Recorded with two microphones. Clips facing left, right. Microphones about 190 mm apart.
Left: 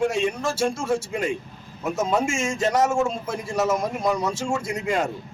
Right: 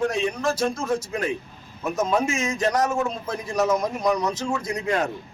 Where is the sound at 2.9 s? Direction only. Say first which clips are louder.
Left 2 dB; 25° left (ahead or behind).